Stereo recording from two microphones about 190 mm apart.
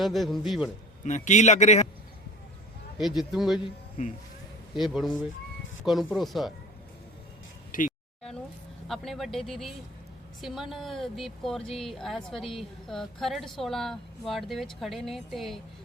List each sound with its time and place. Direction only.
0.0 s speech: centre (ahead or behind)
1.0 s a man's voice: 40° left (ahead or behind)
3.0 s speech: centre (ahead or behind)
3.6 s speech: 35° left (ahead or behind)
4.8 s speech: centre (ahead or behind)
7.7 s a sound: 45° left (ahead or behind)
8.9 s speech: centre (ahead or behind)